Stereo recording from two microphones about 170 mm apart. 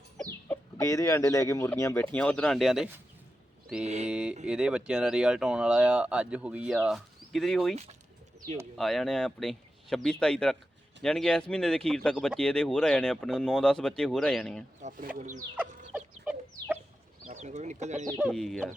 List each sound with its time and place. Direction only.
0.2 s speech: 10° left (ahead or behind)
3.8 s speech: 40° right (ahead or behind)
4.1 s speech: 5° right (ahead or behind)
14.8 s speech: 50° right (ahead or behind)
15.9 s chicken: 5° right (ahead or behind)
17.2 s speech: 45° right (ahead or behind)
18.2 s speech: centre (ahead or behind)